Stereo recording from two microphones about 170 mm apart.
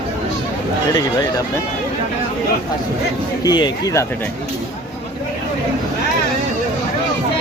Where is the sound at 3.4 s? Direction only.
25° left (ahead or behind).